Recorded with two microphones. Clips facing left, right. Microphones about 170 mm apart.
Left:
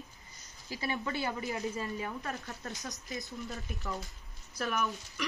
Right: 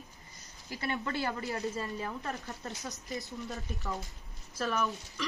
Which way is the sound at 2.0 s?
Centre (ahead or behind).